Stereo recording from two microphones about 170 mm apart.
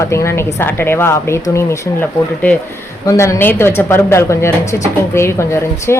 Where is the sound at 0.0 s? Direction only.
15° left (ahead or behind).